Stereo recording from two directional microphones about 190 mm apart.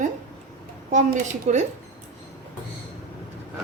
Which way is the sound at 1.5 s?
35° right (ahead or behind).